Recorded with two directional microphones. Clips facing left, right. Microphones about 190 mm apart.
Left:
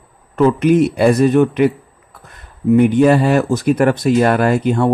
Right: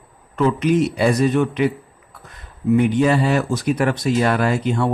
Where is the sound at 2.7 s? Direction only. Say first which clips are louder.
Left 5 dB; 50° left (ahead or behind).